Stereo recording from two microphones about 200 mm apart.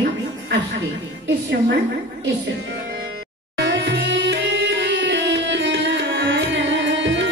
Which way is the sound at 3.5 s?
60° right (ahead or behind).